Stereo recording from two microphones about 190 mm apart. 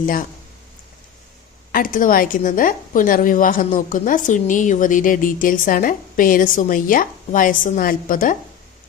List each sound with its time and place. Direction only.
0.0 s a woman's voice: 45° left (ahead or behind)
1.7 s a woman's voice: 45° left (ahead or behind)